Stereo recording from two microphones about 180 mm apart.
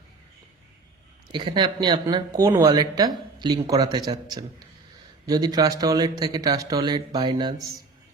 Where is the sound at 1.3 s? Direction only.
25° right (ahead or behind).